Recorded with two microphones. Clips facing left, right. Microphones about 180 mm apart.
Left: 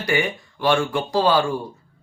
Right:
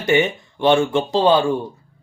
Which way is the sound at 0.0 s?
25° right (ahead or behind).